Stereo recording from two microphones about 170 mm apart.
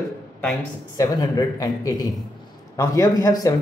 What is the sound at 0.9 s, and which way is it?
A man's voice, 20° left (ahead or behind).